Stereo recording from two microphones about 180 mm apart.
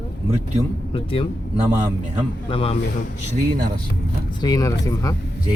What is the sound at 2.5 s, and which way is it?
Speech, 30° left (ahead or behind).